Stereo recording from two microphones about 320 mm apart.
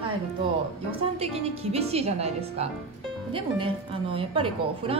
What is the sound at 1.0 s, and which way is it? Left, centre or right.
A woman's voice, centre.